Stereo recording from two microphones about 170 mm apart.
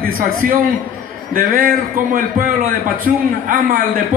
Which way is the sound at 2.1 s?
55° right (ahead or behind).